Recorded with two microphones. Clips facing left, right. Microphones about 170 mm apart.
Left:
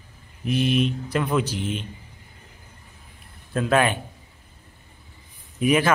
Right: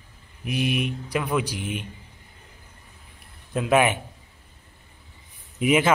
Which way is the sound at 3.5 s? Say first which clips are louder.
Even; 15° right (ahead or behind).